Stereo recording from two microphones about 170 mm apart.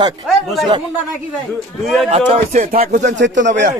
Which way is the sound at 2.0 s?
35° right (ahead or behind).